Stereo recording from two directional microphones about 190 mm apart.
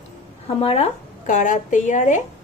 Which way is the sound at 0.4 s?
30° left (ahead or behind).